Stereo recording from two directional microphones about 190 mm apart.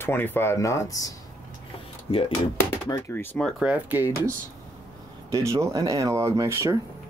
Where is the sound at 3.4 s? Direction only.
5° right (ahead or behind).